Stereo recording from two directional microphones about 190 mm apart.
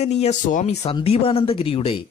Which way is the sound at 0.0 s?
35° left (ahead or behind).